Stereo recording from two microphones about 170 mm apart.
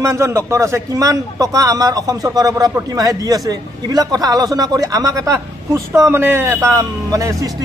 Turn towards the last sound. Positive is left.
turn(degrees=-20)  # may be behind; listen again after turning